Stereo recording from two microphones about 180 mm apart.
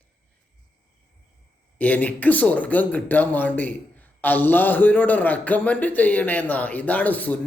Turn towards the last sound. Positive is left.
turn(degrees=10)  # may be behind; listen again after turning